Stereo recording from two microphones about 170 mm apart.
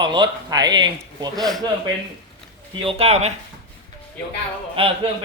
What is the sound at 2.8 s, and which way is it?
Speech, 35° right (ahead or behind).